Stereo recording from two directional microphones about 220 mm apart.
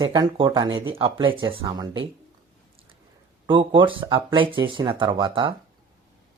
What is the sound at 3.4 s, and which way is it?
Speech, 20° right (ahead or behind).